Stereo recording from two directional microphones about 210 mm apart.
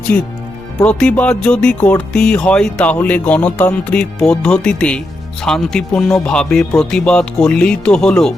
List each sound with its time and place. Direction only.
0.1 s speech: 5° left (ahead or behind)